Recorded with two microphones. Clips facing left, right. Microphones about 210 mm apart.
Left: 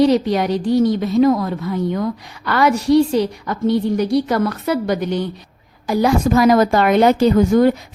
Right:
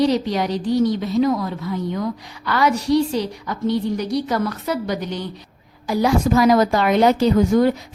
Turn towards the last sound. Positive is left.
turn(degrees=55)  # may be behind; listen again after turning